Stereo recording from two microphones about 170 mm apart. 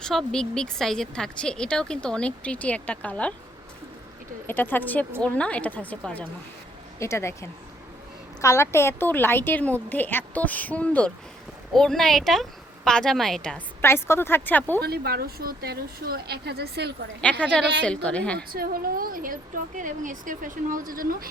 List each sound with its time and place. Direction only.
0.0 s speech: centre (ahead or behind)
4.4 s a woman's voice: 10° left (ahead or behind)
13.8 s a woman's voice: 15° left (ahead or behind)
14.8 s speech: 65° right (ahead or behind)
17.2 s a woman's voice: 5° left (ahead or behind)
18.3 s speech: 60° right (ahead or behind)